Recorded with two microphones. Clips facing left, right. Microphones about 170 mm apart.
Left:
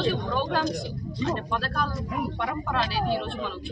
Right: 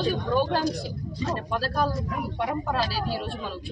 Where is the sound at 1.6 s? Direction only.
35° right (ahead or behind).